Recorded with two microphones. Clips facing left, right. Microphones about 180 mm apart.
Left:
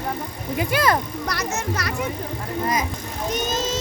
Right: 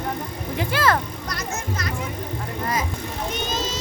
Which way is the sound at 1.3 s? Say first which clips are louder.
Left 4 dB; 75° left (ahead or behind).